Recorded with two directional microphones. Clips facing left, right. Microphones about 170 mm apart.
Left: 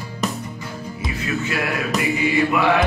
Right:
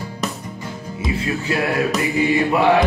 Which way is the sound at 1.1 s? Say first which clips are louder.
Right 3 dB; 30° right (ahead or behind).